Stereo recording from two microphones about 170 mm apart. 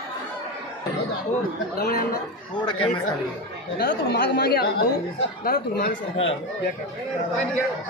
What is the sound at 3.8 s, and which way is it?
Speech, 60° left (ahead or behind).